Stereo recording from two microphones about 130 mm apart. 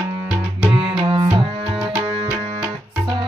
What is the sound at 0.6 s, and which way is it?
Music, 45° right (ahead or behind).